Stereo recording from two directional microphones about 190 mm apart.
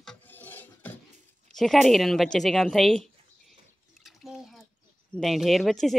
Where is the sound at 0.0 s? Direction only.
5° left (ahead or behind).